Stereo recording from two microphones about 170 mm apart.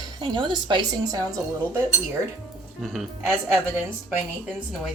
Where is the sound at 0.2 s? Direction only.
30° right (ahead or behind).